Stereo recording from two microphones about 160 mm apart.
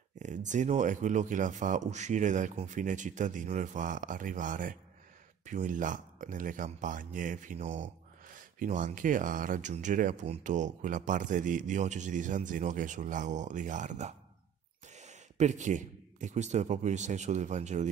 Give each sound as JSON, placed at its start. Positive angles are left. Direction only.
{"t": 0.2, "sound": "a man's voice", "side_deg": -50}